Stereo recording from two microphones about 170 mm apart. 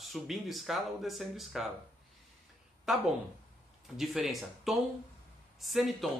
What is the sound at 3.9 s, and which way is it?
Speech, centre (ahead or behind).